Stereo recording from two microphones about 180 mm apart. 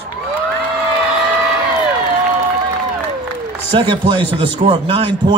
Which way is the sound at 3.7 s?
30° right (ahead or behind).